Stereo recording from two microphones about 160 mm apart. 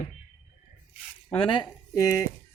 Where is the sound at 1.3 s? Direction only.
30° left (ahead or behind).